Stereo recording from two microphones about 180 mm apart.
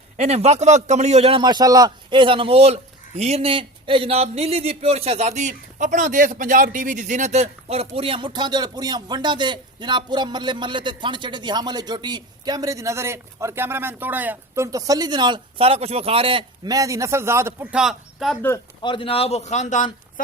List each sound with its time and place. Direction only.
0.2 s speech: 35° right (ahead or behind); by 18.3 s centre (ahead or behind)
18.4 s speech: 20° left (ahead or behind); by 20.2 s 45° left (ahead or behind)